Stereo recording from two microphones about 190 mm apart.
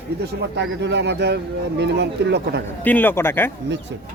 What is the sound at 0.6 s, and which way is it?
Speech, 65° right (ahead or behind).